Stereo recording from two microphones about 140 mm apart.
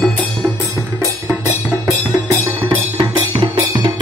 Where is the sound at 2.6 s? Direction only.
35° right (ahead or behind).